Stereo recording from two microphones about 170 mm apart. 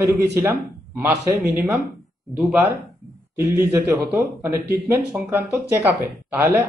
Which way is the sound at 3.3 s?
15° right (ahead or behind).